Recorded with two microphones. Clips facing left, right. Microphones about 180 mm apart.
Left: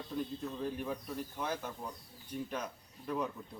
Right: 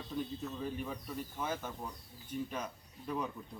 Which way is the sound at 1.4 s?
5° right (ahead or behind).